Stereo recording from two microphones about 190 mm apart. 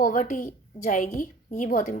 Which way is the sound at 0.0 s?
45° left (ahead or behind).